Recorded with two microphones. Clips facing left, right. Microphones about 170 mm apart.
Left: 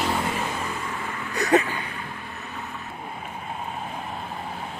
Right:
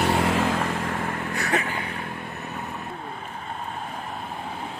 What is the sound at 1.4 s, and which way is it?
Vehicle, 40° left (ahead or behind).